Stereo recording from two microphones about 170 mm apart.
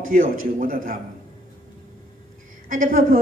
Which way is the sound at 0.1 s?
50° right (ahead or behind).